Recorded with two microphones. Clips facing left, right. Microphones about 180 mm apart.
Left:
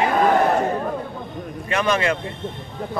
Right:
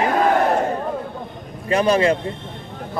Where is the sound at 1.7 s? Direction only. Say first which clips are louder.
Right 4 dB; 35° right (ahead or behind).